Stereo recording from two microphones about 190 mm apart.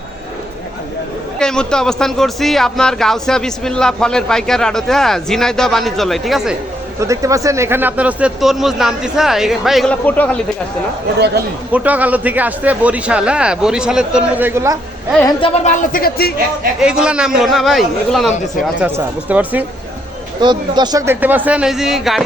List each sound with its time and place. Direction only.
1.4 s a man's voice: 5° left (ahead or behind)
7.0 s a man's voice: 15° right (ahead or behind); by 10.3 s 10° left (ahead or behind)
11.7 s a man's voice: 10° right (ahead or behind)
15.4 s speech: 30° left (ahead or behind)
15.7 s speech: 50° left (ahead or behind)
16.8 s a man's voice: 5° right (ahead or behind)
20.4 s a man's voice: 25° right (ahead or behind); by 22.2 s centre (ahead or behind)